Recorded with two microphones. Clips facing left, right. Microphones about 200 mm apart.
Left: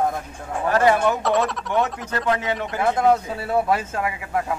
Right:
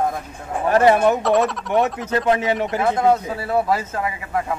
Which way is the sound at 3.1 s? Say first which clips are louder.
Right 1 dB; centre (ahead or behind).